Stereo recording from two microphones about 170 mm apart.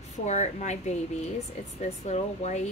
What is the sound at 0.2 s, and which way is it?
A woman's voice, 40° left (ahead or behind).